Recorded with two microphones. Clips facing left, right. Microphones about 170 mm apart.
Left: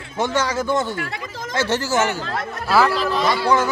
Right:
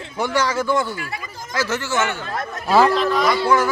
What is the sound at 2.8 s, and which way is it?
Speech, 5° left (ahead or behind).